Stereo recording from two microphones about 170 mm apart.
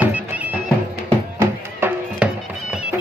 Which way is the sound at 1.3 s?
10° right (ahead or behind).